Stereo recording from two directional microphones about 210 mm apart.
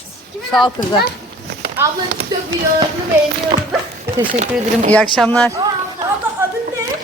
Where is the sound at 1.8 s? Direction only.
10° right (ahead or behind).